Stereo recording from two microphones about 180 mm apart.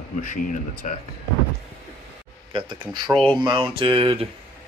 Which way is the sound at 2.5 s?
25° right (ahead or behind).